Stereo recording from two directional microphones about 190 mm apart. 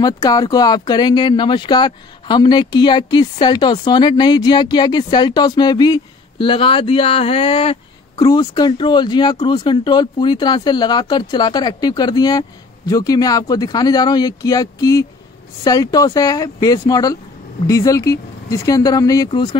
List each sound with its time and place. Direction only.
0.0 s speech: 20° left (ahead or behind)